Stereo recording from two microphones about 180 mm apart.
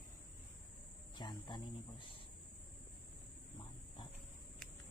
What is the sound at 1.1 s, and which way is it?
Cricket, 25° left (ahead or behind).